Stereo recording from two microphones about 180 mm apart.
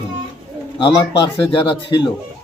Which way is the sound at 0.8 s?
25° left (ahead or behind).